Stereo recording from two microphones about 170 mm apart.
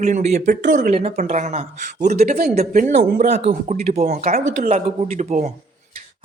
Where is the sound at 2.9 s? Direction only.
75° right (ahead or behind).